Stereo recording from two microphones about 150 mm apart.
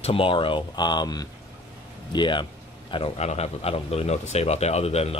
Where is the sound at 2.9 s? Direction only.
45° left (ahead or behind).